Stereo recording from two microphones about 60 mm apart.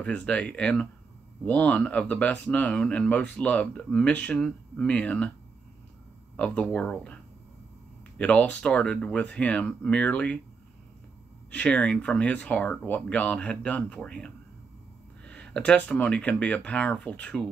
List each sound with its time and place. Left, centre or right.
0.0 s speech: centre
6.3 s speech: left
8.2 s speech: left
11.5 s speech: left